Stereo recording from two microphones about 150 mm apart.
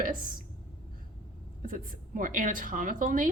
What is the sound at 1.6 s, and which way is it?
A woman's voice, 65° right (ahead or behind).